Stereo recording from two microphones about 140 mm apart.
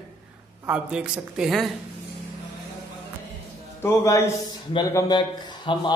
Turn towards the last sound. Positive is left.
turn(degrees=40)  # may be behind; listen again after turning